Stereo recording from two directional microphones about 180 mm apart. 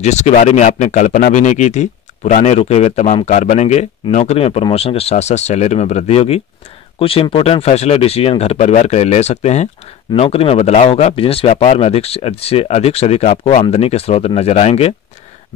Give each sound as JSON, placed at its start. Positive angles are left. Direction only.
{"t": 0.0, "sound": "speech", "side_deg": 40}